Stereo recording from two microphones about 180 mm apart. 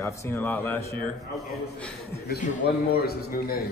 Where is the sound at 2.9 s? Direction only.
60° left (ahead or behind).